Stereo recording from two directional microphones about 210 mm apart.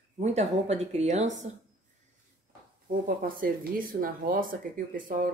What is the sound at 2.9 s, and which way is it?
Speech, 40° right (ahead or behind).